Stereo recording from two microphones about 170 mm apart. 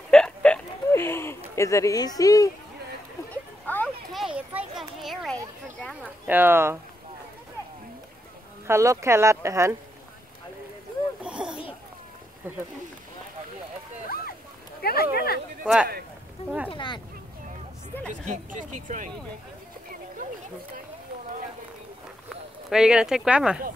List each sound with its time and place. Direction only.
0.1 s hiccup: 5° left (ahead or behind); by 2.5 s 20° left (ahead or behind)
3.3 s a sound: 10° left (ahead or behind)
4.4 s children playing: 5° right (ahead or behind)
6.2 s speech: 10° right (ahead or behind)
8.6 s speech: 15° right (ahead or behind)
11.2 s a sound: 5° right (ahead or behind)
14.0 s a sound: 60° left (ahead or behind)
14.8 s speech: 65° left (ahead or behind)
15.6 s speech: 5° right (ahead or behind)
16.7 s speech: 25° left (ahead or behind)
18.2 s speech: 45° right (ahead or behind)
22.7 s speech: 5° right (ahead or behind)